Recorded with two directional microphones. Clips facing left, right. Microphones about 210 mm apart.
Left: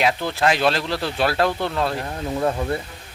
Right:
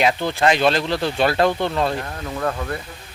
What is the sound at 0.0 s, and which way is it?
Speech, centre (ahead or behind).